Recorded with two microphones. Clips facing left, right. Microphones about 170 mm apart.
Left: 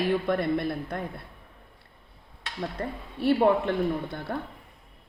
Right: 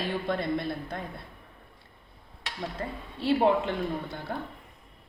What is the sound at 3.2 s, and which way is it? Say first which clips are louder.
Speech: left 2 dB; 60° left (ahead or behind).